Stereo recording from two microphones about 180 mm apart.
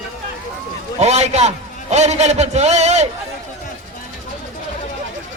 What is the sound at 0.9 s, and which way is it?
A man's voice, 40° right (ahead or behind).